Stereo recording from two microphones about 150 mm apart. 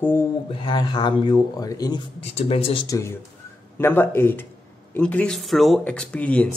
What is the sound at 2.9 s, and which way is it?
Speech, 20° left (ahead or behind).